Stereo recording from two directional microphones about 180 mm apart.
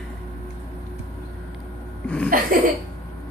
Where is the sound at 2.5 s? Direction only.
50° right (ahead or behind).